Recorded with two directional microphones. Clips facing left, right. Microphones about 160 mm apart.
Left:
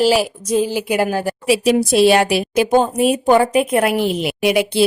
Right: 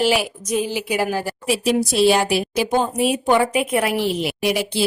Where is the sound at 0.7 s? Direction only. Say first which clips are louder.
Left 4 dB; 50° left (ahead or behind); by 2.7 s 70° left (ahead or behind).